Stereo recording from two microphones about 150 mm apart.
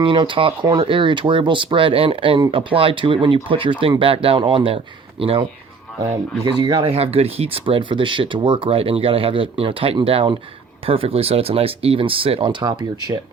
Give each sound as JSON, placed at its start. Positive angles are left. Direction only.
{"t": 0.0, "sound": "speech", "side_deg": -35}